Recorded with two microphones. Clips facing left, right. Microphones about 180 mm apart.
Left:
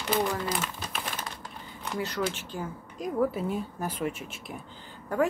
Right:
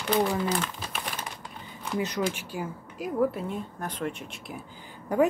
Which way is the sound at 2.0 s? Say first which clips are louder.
Right 1 dB; 15° right (ahead or behind).